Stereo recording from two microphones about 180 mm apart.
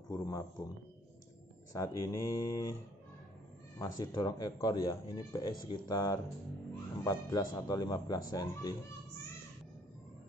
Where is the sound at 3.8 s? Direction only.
20° left (ahead or behind).